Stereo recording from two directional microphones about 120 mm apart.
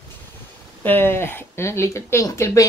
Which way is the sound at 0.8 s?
15° left (ahead or behind).